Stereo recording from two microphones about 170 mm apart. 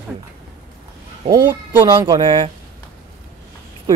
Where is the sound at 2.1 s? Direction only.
30° right (ahead or behind).